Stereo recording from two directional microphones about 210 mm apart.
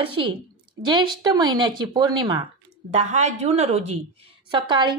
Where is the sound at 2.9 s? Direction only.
30° right (ahead or behind).